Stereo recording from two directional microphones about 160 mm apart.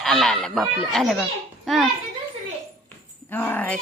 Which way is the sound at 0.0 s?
5° left (ahead or behind).